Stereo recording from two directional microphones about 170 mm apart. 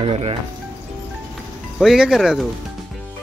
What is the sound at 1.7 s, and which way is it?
Speech, centre (ahead or behind).